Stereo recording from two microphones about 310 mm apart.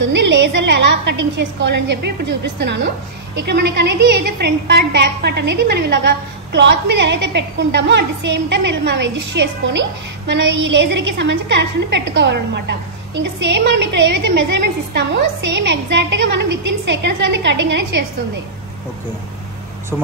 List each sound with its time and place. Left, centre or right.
0.1 s a woman's voice: right